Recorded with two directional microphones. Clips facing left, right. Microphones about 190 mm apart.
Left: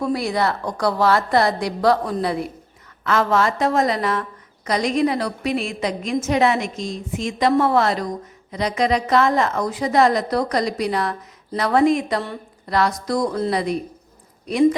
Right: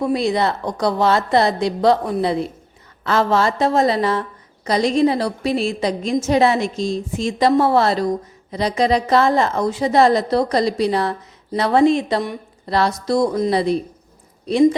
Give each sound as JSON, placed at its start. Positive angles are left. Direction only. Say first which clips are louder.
{"t": 0.0, "sound": "a woman's voice", "louder": "right 3 dB", "side_deg": -20}